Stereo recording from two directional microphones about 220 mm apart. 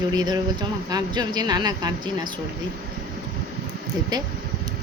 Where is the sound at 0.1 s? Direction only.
20° right (ahead or behind).